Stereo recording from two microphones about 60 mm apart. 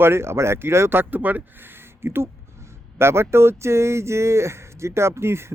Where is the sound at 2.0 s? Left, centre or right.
Right.